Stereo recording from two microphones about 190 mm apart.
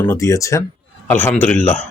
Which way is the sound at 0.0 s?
15° left (ahead or behind).